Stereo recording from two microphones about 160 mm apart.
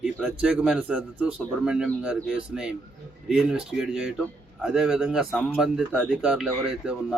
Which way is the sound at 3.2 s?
5° right (ahead or behind).